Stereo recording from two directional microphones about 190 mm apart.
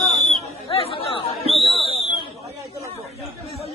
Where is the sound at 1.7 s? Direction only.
30° left (ahead or behind).